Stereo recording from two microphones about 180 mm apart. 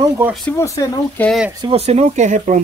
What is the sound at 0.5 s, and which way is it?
Speech, 15° left (ahead or behind).